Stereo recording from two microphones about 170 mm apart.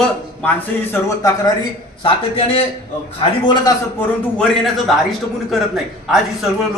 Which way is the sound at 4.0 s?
5° left (ahead or behind).